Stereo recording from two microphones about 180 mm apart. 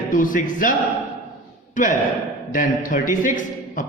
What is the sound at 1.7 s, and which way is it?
A man's voice, 45° left (ahead or behind).